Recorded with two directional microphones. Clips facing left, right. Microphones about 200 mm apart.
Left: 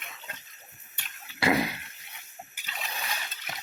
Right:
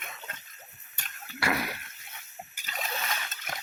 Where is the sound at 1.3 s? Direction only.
20° left (ahead or behind).